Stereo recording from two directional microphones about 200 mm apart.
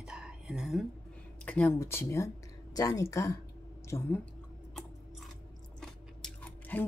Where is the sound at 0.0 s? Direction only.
5° right (ahead or behind).